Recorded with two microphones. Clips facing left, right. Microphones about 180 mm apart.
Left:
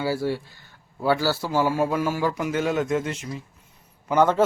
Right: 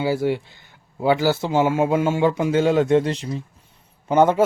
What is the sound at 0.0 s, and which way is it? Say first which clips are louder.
Speech: right 4 dB; 20° right (ahead or behind).